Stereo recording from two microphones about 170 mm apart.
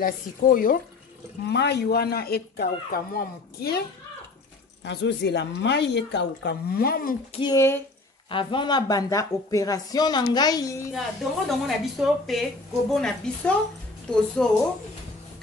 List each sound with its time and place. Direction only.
0.0 s speech: 55° left (ahead or behind)
1.5 s speech: 80° left; by 3.8 s 65° left (ahead or behind)
4.8 s speech: 90° left; by 7.2 s 60° left (ahead or behind)
7.3 s a woman's voice: 20° left (ahead or behind)
8.3 s a woman's voice: 30° left (ahead or behind)
10.9 s a woman's voice: centre (ahead or behind)